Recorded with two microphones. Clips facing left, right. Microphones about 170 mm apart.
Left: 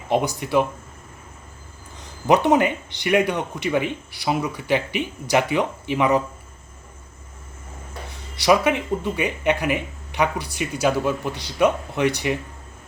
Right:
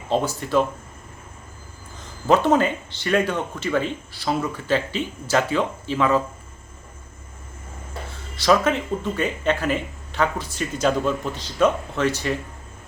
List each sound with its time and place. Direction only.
0.1 s speech: 15° left (ahead or behind)
2.2 s speech: 15° left (ahead or behind)
8.1 s speech: 15° left (ahead or behind)